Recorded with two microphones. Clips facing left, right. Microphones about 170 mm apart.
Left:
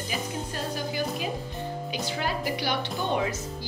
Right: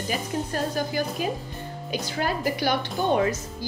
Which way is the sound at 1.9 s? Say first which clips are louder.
Right 5 dB; 45° right (ahead or behind).